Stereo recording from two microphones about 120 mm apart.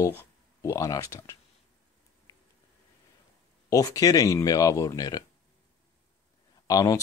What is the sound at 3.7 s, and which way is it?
Speech, 30° left (ahead or behind).